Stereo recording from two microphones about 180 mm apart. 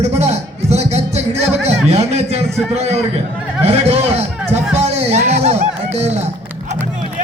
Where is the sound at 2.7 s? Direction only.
35° right (ahead or behind).